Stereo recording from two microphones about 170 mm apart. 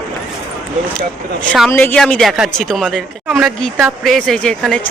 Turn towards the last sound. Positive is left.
turn(degrees=5)  # may be behind; listen again after turning